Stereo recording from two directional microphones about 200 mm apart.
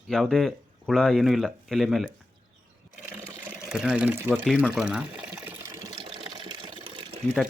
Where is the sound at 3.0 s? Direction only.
10° right (ahead or behind); by 7.0 s 25° right (ahead or behind).